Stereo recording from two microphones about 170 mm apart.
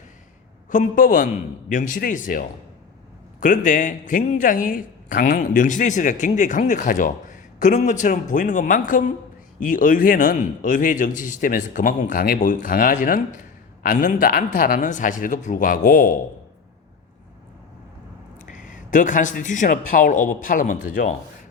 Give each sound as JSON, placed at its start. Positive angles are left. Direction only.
{"t": 0.7, "sound": "a woman's voice", "side_deg": 50}
{"t": 18.3, "sound": "a man's voice", "side_deg": 50}